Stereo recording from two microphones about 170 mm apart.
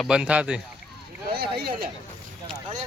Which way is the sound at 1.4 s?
65° right (ahead or behind).